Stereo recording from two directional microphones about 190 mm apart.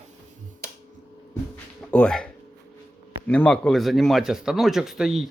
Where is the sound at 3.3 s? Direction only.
5° left (ahead or behind).